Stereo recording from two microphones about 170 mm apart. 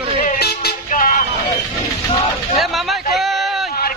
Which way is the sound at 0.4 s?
65° left (ahead or behind).